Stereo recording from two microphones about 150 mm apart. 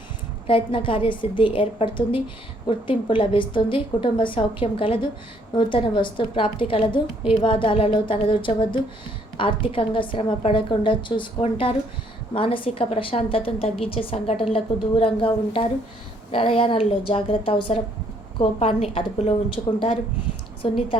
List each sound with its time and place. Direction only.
0.4 s a woman's voice: 35° left (ahead or behind)
20.6 s a woman's voice: 40° left (ahead or behind)